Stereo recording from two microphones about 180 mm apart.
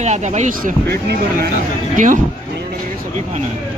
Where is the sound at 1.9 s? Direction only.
45° right (ahead or behind).